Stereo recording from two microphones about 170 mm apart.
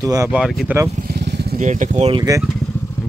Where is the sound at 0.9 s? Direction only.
65° right (ahead or behind); by 1.6 s 80° right.